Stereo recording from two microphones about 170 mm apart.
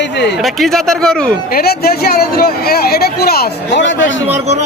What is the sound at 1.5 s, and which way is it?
Speech, 65° left (ahead or behind).